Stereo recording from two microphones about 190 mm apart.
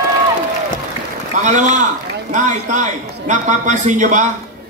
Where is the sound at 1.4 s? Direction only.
40° right (ahead or behind).